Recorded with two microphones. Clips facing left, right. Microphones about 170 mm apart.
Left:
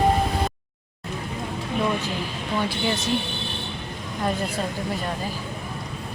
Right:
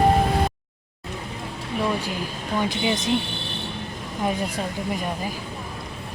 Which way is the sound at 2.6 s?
15° right (ahead or behind).